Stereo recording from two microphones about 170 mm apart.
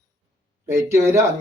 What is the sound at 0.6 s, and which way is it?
Speech, 15° right (ahead or behind).